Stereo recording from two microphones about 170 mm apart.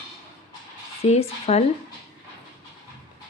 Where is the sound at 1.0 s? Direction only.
40° left (ahead or behind).